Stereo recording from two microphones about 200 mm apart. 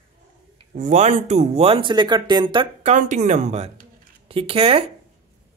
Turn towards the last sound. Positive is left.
turn(degrees=-30)  # may be behind; listen again after turning